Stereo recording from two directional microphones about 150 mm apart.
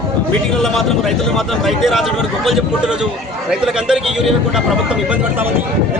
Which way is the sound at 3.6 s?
5° right (ahead or behind).